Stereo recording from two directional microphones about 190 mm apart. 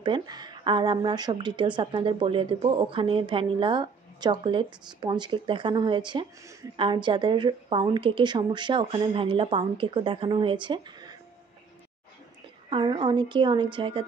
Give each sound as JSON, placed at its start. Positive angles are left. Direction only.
{"t": 0.0, "sound": "speech", "side_deg": -25}
{"t": 12.6, "sound": "speech", "side_deg": -20}